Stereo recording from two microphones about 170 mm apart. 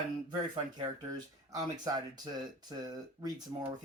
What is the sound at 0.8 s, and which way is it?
Speech, 25° right (ahead or behind).